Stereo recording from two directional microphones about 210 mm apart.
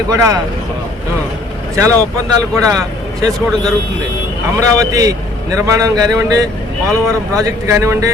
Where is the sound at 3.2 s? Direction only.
15° right (ahead or behind).